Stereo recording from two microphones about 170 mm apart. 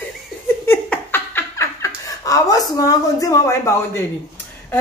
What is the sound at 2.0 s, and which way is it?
A woman's voice, 20° left (ahead or behind).